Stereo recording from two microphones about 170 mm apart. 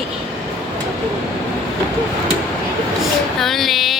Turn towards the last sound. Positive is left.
turn(degrees=0)  # may be behind; listen again after turning